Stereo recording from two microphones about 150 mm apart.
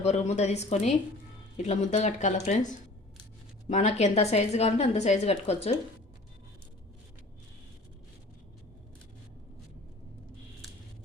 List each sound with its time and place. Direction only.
0.0 s a woman's voice: 50° left (ahead or behind)
3.7 s a woman's voice: 50° left (ahead or behind)